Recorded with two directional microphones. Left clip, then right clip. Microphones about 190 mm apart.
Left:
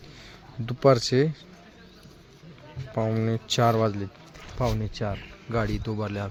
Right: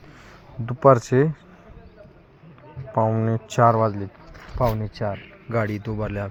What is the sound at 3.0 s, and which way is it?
Speech, 5° left (ahead or behind).